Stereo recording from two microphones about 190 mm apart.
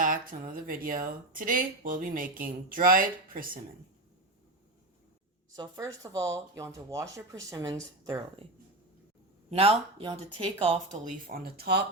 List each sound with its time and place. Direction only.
0.0 s speech: 45° right (ahead or behind)
5.5 s speech: 15° right (ahead or behind)
9.5 s speech: 30° right (ahead or behind)
11.3 s speech: 55° right (ahead or behind)